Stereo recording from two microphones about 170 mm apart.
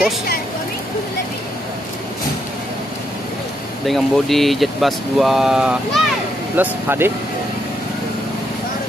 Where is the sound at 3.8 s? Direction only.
Centre (ahead or behind).